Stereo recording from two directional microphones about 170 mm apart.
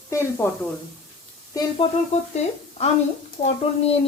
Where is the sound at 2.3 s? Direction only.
35° left (ahead or behind).